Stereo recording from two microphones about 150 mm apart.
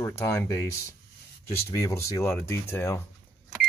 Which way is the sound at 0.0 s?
15° left (ahead or behind).